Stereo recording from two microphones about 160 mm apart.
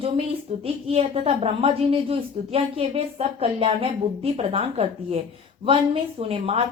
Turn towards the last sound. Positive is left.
turn(degrees=-35)  # may be behind; listen again after turning